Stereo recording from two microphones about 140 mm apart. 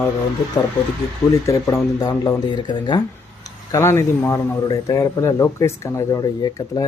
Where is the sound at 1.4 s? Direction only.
25° left (ahead or behind).